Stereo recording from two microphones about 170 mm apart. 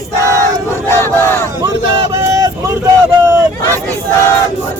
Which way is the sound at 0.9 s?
10° left (ahead or behind).